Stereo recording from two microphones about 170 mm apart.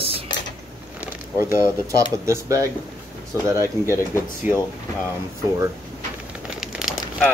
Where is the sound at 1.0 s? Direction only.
15° right (ahead or behind).